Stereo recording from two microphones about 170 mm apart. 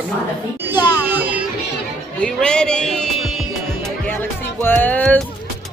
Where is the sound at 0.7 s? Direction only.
25° left (ahead or behind).